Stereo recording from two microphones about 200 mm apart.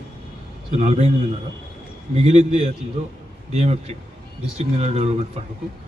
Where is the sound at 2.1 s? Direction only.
30° right (ahead or behind).